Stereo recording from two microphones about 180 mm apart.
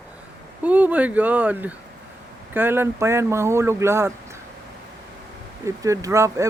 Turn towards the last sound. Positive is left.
turn(degrees=-15)  # may be behind; listen again after turning